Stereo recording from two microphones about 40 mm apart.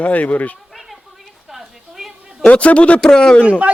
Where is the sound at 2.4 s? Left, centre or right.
Left.